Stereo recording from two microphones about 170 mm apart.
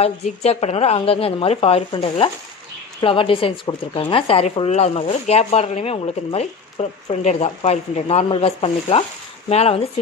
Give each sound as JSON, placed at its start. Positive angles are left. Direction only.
{"t": 0.0, "sound": "speech", "side_deg": 35}